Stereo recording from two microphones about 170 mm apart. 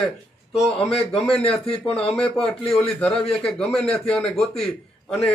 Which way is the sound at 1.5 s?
5° left (ahead or behind).